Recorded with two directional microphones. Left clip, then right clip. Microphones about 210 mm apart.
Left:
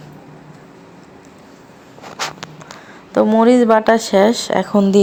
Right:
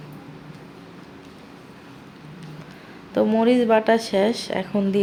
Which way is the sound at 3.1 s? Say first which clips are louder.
Left 7 dB; 15° left (ahead or behind).